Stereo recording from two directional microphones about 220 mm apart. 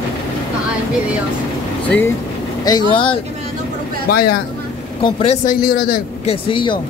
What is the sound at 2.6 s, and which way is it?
Speech, 20° left (ahead or behind).